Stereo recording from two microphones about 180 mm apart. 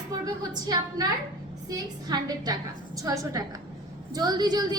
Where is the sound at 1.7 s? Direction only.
20° right (ahead or behind).